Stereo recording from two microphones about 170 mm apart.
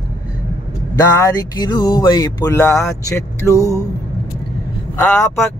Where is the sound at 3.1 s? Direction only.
15° left (ahead or behind).